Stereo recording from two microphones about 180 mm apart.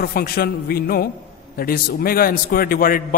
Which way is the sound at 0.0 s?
55° left (ahead or behind).